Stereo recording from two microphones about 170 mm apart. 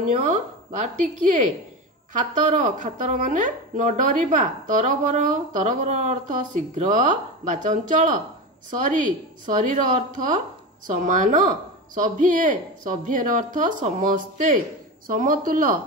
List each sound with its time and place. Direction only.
0.3 s speech: 45° right (ahead or behind)